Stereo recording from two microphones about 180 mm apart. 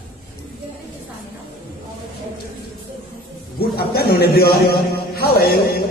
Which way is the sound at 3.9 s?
60° left (ahead or behind).